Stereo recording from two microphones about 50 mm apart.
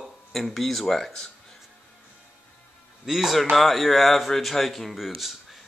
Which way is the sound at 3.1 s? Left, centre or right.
Centre.